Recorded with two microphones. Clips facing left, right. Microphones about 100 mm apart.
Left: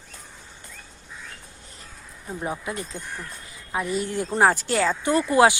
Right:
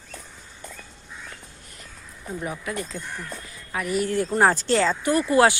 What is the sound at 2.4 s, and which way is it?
Speech, 25° left (ahead or behind).